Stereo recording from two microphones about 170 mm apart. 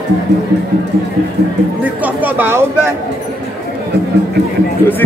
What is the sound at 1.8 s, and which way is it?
Speech, 10° right (ahead or behind).